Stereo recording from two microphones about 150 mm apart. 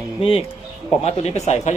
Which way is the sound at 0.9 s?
45° left (ahead or behind).